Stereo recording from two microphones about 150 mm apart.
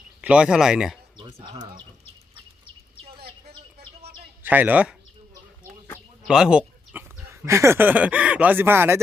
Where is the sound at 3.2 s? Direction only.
90° right.